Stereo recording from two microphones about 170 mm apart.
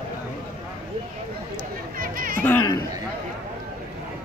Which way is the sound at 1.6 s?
55° right (ahead or behind).